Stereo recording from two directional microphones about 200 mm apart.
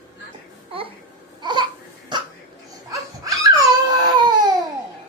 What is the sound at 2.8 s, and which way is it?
Baby cry, 15° right (ahead or behind).